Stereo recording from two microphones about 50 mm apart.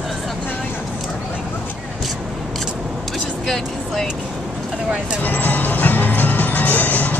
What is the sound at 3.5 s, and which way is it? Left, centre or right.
Speech, centre.